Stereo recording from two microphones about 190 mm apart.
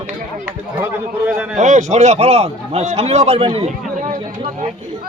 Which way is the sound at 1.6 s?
40° right (ahead or behind).